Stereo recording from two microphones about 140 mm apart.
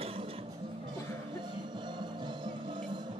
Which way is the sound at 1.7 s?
35° right (ahead or behind).